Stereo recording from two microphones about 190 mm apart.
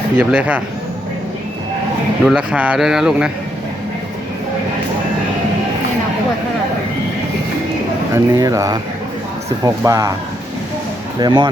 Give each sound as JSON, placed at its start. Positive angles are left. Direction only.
{"t": 0.2, "sound": "speech", "side_deg": -5}
{"t": 2.2, "sound": "speech", "side_deg": -5}
{"t": 8.1, "sound": "speech", "side_deg": -15}
{"t": 11.2, "sound": "speech", "side_deg": -25}